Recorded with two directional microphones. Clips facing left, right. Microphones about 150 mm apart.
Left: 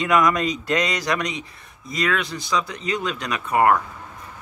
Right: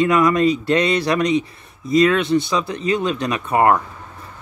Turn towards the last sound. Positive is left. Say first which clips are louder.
# right 2 dB
turn(degrees=-25)  # may be behind; listen again after turning